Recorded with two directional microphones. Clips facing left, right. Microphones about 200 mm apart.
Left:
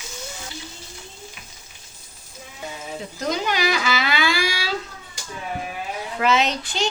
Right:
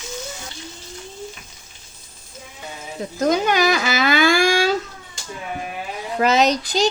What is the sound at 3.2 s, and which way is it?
Speech, 50° right (ahead or behind).